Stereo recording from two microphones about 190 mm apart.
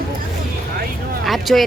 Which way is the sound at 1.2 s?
Centre (ahead or behind).